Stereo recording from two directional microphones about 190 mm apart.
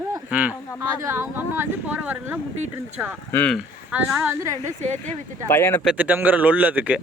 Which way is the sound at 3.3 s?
10° left (ahead or behind).